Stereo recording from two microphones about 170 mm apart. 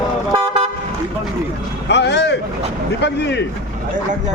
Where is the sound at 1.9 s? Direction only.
90° left.